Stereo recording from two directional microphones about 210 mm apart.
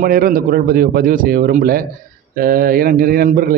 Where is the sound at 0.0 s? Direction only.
45° right (ahead or behind).